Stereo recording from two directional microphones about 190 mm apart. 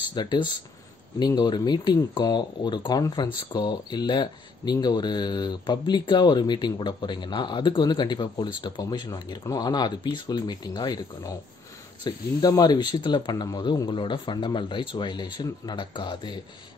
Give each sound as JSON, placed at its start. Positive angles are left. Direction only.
{"t": 0.1, "sound": "speech", "side_deg": 25}